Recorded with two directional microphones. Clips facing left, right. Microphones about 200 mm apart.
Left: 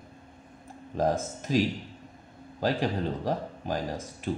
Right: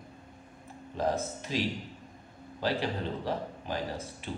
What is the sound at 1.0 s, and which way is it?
Speech, 45° left (ahead or behind).